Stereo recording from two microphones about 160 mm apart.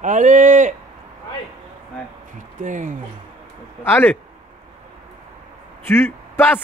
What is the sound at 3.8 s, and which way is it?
Speech, 15° left (ahead or behind).